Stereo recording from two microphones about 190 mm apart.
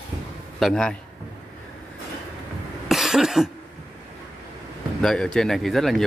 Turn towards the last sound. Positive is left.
turn(degrees=0)  # may be behind; listen again after turning